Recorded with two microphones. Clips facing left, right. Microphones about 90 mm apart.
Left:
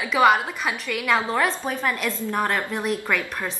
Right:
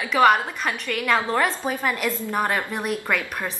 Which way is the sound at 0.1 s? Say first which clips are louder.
Right 1 dB; 5° left (ahead or behind).